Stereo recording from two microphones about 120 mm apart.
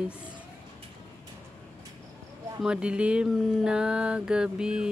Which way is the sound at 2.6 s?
10° right (ahead or behind).